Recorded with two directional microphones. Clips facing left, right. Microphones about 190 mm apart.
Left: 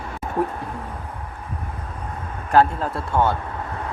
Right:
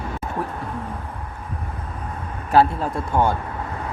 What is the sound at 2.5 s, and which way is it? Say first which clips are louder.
Speech: even; 10° right (ahead or behind).